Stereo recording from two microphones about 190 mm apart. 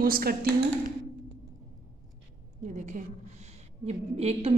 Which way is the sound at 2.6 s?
40° right (ahead or behind).